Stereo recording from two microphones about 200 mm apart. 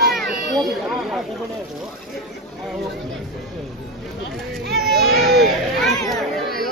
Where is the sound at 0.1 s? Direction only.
Centre (ahead or behind).